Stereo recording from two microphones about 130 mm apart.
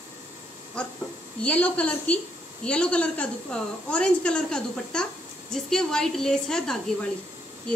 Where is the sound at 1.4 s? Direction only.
10° left (ahead or behind).